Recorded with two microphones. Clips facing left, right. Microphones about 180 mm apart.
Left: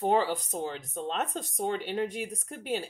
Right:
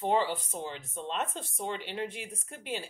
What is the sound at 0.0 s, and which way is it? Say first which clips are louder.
Speech: left 2 dB; 40° left (ahead or behind).